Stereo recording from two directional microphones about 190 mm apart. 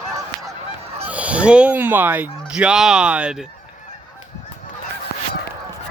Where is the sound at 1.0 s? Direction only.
5° right (ahead or behind).